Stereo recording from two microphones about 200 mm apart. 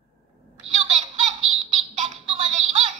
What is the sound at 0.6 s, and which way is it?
Baby laughter, 30° right (ahead or behind).